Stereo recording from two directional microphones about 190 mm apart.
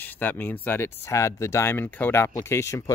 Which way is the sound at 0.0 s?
10° left (ahead or behind).